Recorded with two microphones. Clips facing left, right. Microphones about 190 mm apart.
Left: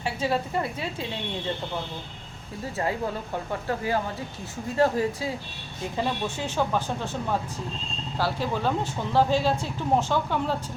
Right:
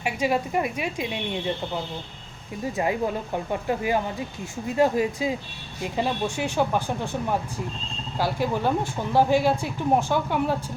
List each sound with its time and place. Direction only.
0.0 s speech: 15° right (ahead or behind)
2.7 s speech: 15° right (ahead or behind)